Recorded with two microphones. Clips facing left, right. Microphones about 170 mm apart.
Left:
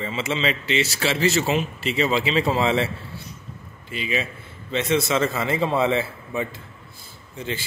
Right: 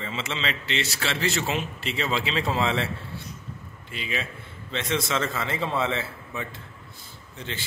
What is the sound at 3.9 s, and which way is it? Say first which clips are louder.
A man's voice: left 6 dB; 5° left (ahead or behind).